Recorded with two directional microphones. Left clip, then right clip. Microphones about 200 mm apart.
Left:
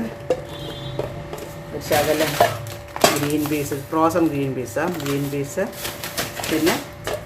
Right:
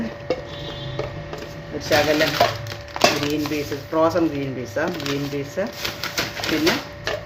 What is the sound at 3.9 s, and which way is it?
A man's voice, 15° left (ahead or behind).